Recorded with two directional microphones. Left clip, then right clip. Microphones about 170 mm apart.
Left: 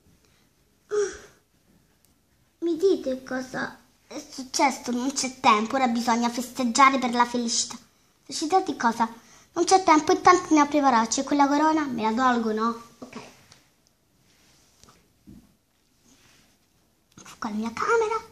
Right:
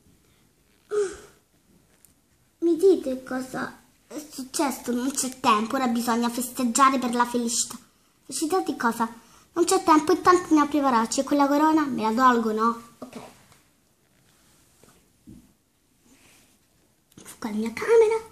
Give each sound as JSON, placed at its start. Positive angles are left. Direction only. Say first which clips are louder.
{"t": 0.8, "sound": "gasp", "louder": "even", "side_deg": 25}
{"t": 2.6, "sound": "a child's voice", "louder": "right 3 dB", "side_deg": 15}
{"t": 17.1, "sound": "speech", "louder": "left 1 dB", "side_deg": 15}